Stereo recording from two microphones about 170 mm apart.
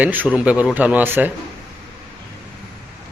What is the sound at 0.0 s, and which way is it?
Speech, 10° right (ahead or behind).